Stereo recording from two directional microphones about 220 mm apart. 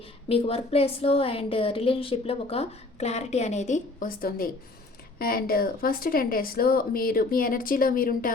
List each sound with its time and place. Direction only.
0.3 s a woman's voice: 25° left (ahead or behind)